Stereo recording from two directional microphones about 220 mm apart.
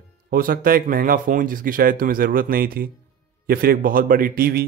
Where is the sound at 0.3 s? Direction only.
40° right (ahead or behind).